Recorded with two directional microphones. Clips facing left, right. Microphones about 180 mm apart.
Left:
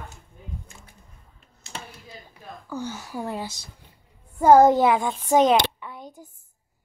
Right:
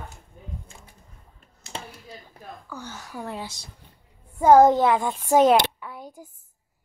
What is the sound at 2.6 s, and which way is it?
Speech, 20° left (ahead or behind).